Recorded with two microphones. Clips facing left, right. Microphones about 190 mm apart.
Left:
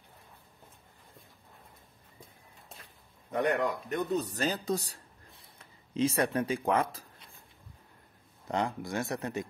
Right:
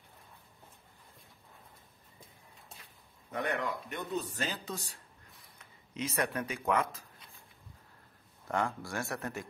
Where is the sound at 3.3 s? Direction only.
40° left (ahead or behind).